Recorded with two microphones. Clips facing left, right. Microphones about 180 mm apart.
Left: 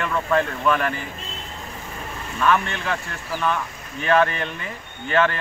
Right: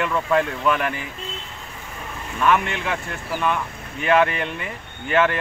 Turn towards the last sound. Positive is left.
turn(degrees=-15)  # may be behind; listen again after turning